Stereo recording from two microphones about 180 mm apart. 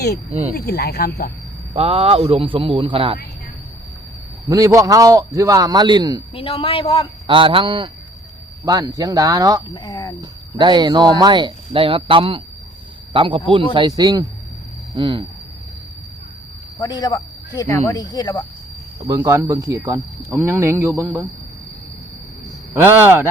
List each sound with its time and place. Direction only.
0.3 s a man's voice: 35° right (ahead or behind)
0.5 s speech: 60° left (ahead or behind)
1.7 s a man's voice: 35° right (ahead or behind)
4.4 s speech: 20° right (ahead or behind)
6.3 s a man's voice: 30° left (ahead or behind)
7.3 s speech: 30° right (ahead or behind)
9.6 s speech: 25° left (ahead or behind)
10.2 s speech: 25° right (ahead or behind)
16.7 s speech: 20° left (ahead or behind)
19.0 s speech: 15° right (ahead or behind)
22.7 s speech: 10° right (ahead or behind)